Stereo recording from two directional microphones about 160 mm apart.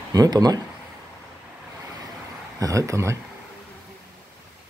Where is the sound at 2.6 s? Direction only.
20° right (ahead or behind).